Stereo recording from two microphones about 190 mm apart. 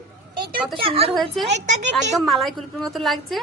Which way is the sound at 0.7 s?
30° right (ahead or behind).